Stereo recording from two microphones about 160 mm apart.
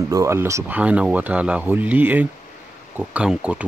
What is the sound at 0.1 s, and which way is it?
Speech, 15° right (ahead or behind).